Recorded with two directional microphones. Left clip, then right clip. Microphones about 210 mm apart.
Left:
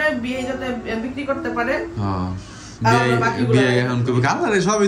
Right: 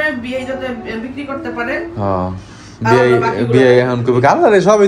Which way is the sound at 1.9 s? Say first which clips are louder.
Right 9 dB; 10° left (ahead or behind).